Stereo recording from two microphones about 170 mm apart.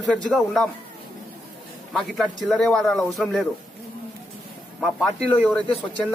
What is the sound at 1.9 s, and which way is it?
Speech, centre (ahead or behind).